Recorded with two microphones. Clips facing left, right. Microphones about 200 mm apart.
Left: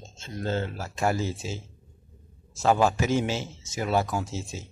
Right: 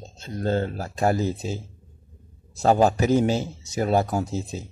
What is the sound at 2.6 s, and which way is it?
Speech, 40° right (ahead or behind).